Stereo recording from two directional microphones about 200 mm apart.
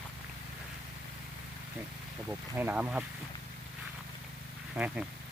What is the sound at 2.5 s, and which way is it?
Speech, 10° right (ahead or behind).